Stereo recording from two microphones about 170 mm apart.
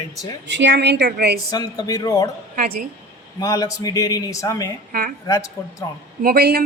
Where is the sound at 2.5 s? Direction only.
55° right (ahead or behind).